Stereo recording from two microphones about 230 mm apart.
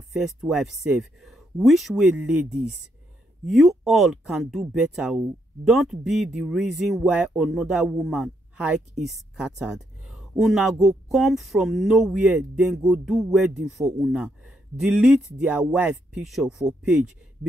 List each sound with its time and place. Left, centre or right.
0.1 s speech: centre